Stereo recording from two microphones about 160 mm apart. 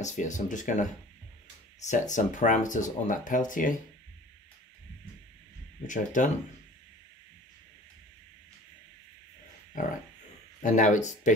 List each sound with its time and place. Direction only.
0.0 s speech: 50° left (ahead or behind)
5.9 s speech: 55° left (ahead or behind)
10.6 s speech: 50° left (ahead or behind)